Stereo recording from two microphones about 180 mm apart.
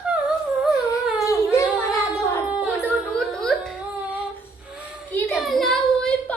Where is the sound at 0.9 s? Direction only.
15° left (ahead or behind).